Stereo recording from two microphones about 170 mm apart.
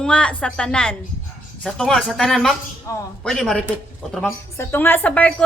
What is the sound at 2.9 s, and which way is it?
Speech, 20° left (ahead or behind).